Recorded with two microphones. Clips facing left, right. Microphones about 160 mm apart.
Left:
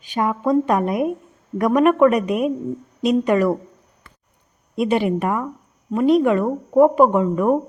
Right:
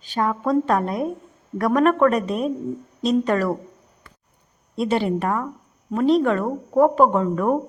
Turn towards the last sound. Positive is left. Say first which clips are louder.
# left 2 dB
turn(degrees=10)  # may be behind; listen again after turning